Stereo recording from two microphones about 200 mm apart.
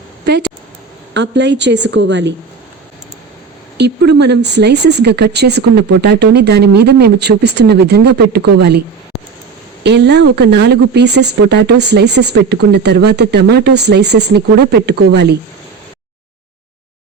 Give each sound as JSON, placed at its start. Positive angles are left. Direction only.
{"t": 0.3, "sound": "speech", "side_deg": -55}
{"t": 3.8, "sound": "speech", "side_deg": -55}
{"t": 9.8, "sound": "speech", "side_deg": -60}